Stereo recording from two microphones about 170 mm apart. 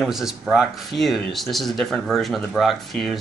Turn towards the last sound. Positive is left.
turn(degrees=0)  # may be behind; listen again after turning